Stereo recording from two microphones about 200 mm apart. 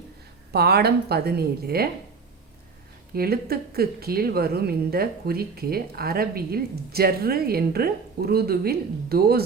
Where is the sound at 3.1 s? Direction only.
50° right (ahead or behind).